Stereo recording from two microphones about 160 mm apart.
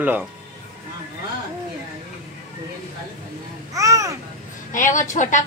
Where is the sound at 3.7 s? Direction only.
20° right (ahead or behind).